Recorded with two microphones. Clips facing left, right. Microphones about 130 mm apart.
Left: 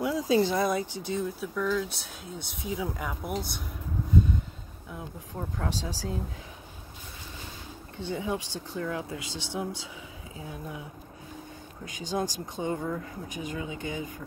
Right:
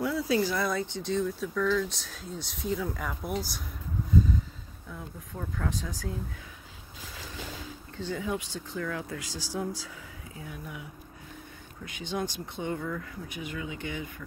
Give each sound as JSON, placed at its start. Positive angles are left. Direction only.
{"t": 0.0, "sound": "speech", "side_deg": 15}
{"t": 4.9, "sound": "speech", "side_deg": 25}
{"t": 5.7, "sound": "speech", "side_deg": 85}
{"t": 8.1, "sound": "speech", "side_deg": 25}
{"t": 11.8, "sound": "speech", "side_deg": 40}